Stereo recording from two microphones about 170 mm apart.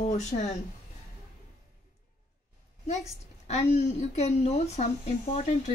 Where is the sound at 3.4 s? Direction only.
40° left (ahead or behind).